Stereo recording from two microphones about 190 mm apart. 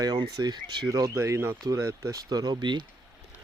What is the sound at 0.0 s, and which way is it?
Speech, 20° right (ahead or behind).